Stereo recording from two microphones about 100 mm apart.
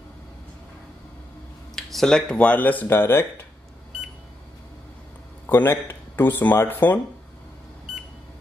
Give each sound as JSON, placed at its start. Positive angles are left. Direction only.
{"t": 1.8, "sound": "speech", "side_deg": 5}
{"t": 5.5, "sound": "speech", "side_deg": 25}